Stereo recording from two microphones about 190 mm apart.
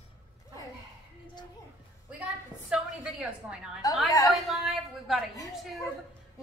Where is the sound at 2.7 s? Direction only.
5° right (ahead or behind).